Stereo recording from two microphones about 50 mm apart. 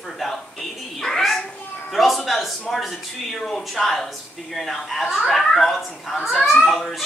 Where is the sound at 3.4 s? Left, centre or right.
Centre.